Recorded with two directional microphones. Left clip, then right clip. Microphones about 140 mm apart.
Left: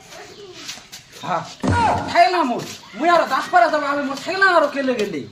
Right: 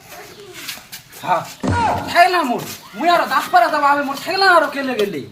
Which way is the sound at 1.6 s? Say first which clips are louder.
Even; centre (ahead or behind).